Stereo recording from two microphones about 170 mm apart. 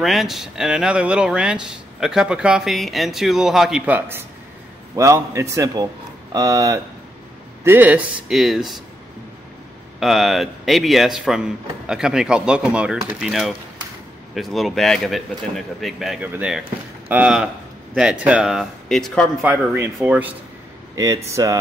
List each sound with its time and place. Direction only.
0.0 s a man's voice: centre (ahead or behind)
9.9 s a man's voice: centre (ahead or behind)
19.4 s a man's voice: 10° right (ahead or behind)
20.9 s speech: 20° right (ahead or behind)